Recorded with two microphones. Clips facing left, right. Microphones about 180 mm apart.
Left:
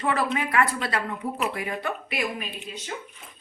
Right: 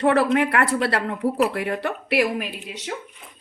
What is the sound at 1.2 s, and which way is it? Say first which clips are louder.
Speech: right 8 dB; 40° right (ahead or behind).